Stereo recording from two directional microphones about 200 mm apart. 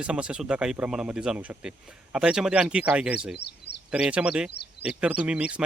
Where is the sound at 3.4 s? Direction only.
55° left (ahead or behind).